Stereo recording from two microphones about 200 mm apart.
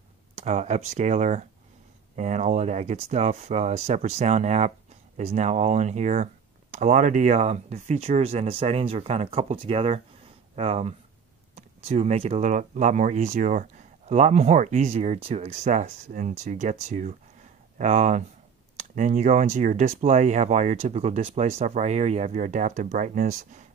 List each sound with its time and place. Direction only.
0.4 s speech: 35° right (ahead or behind)